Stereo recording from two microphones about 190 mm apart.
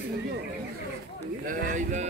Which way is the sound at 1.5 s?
40° right (ahead or behind).